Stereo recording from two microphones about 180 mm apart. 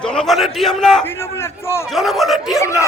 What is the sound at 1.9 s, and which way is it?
Speech, centre (ahead or behind).